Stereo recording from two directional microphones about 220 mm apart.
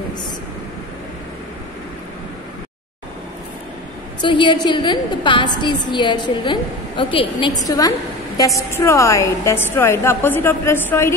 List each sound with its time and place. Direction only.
4.2 s a woman's voice: 20° left (ahead or behind)